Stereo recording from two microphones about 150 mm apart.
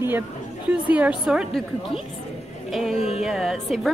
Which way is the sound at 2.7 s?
Centre (ahead or behind).